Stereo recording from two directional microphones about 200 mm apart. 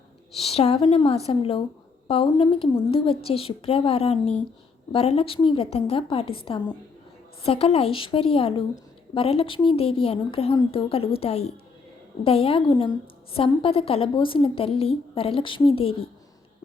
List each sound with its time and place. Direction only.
0.3 s a woman's voice: 30° left (ahead or behind)